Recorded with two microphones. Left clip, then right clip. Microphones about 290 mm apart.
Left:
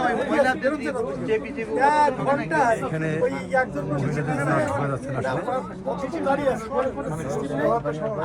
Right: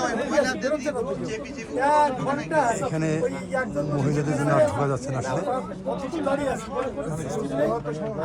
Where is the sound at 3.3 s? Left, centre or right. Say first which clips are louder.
Left 4 dB; left.